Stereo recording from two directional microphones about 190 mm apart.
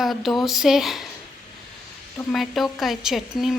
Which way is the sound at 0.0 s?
Centre (ahead or behind).